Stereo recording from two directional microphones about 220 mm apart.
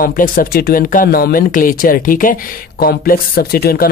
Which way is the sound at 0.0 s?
40° left (ahead or behind).